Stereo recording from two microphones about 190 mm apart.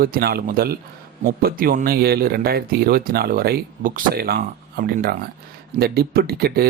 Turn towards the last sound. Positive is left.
turn(degrees=-55)  # may be behind; listen again after turning